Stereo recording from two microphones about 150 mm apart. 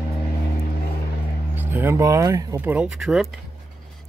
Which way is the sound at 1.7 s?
15° right (ahead or behind).